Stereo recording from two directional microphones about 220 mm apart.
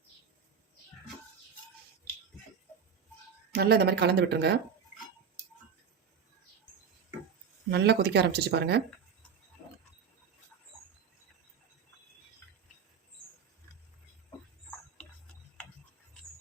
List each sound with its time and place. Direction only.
3.5 s speech: 45° right (ahead or behind)
7.7 s speech: 50° right (ahead or behind)